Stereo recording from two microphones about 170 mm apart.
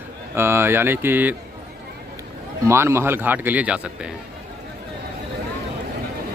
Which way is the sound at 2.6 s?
15° right (ahead or behind).